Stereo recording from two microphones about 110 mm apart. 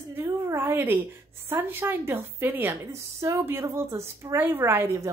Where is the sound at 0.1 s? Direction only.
20° right (ahead or behind).